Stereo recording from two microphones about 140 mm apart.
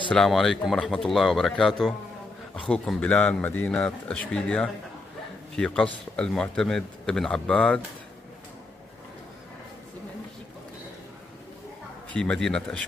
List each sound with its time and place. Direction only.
0.1 s a man's voice: centre (ahead or behind)
12.1 s a man's voice: 5° left (ahead or behind)